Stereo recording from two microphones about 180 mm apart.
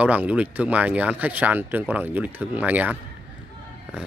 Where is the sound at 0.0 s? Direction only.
10° right (ahead or behind).